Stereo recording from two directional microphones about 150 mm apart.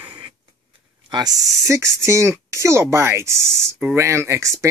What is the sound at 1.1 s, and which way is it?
Speech, 25° right (ahead or behind).